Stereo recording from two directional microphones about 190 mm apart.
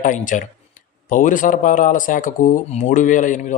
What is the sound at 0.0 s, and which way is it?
Speech, 45° left (ahead or behind).